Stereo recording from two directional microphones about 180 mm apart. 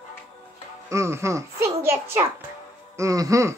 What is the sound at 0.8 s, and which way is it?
A child's voice, 15° right (ahead or behind).